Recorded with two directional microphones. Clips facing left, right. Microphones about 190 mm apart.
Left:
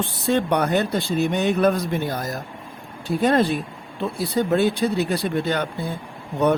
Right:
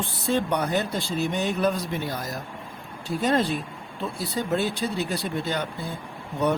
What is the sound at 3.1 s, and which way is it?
Speech, 60° left (ahead or behind).